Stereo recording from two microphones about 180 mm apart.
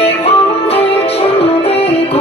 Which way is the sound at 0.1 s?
35° left (ahead or behind).